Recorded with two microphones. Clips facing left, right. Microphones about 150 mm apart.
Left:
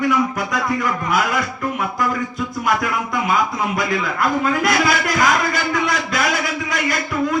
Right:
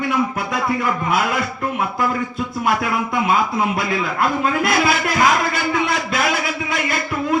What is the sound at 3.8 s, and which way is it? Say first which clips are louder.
Speech: even; 25° right (ahead or behind).